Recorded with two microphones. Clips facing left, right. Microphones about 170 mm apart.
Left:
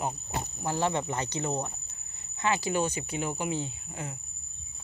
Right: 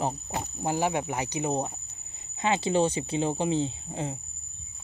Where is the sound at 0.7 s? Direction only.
10° right (ahead or behind).